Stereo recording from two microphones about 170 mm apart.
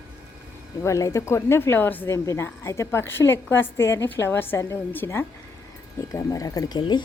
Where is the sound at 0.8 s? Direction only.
15° left (ahead or behind).